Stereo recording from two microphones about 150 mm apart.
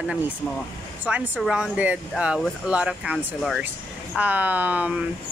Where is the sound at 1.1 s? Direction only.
10° right (ahead or behind).